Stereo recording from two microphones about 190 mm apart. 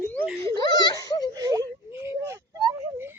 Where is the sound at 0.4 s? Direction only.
20° left (ahead or behind).